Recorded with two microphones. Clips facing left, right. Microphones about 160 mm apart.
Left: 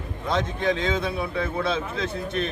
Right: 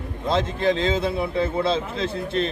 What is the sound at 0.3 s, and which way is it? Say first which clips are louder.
A man's voice: right 3 dB; 30° right (ahead or behind).